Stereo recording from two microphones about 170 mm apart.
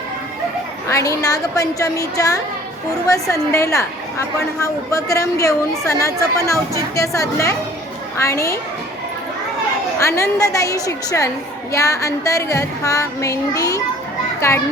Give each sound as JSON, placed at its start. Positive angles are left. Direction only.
{"t": 0.9, "sound": "a woman's voice", "side_deg": 20}
{"t": 10.0, "sound": "a woman's voice", "side_deg": 15}